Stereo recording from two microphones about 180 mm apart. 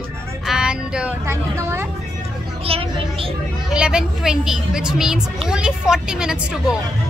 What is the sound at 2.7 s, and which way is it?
Speech, 30° right (ahead or behind).